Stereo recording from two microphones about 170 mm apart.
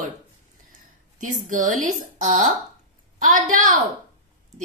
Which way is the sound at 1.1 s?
50° right (ahead or behind).